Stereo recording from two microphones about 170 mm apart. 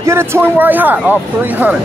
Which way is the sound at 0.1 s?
10° right (ahead or behind).